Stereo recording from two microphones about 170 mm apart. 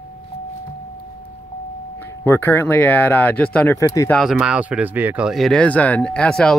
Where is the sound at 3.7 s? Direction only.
20° left (ahead or behind).